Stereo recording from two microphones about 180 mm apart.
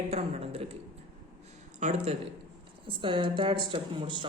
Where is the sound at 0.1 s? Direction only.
35° right (ahead or behind).